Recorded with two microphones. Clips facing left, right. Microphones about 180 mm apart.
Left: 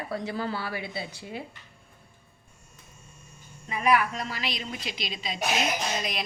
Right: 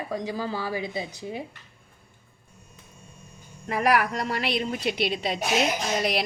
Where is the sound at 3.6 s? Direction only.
75° right (ahead or behind).